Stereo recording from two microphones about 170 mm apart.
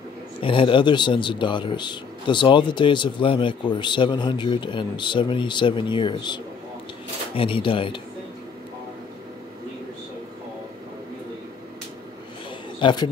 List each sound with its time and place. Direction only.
0.4 s speech: 30° left (ahead or behind)
12.8 s speech: 25° left (ahead or behind)